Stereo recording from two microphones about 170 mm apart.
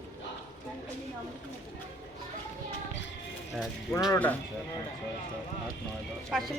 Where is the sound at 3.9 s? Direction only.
5° left (ahead or behind).